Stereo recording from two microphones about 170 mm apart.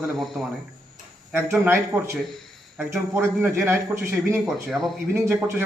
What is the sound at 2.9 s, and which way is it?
Speech, 15° right (ahead or behind).